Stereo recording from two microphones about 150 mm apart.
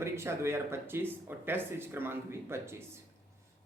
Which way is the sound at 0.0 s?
15° right (ahead or behind).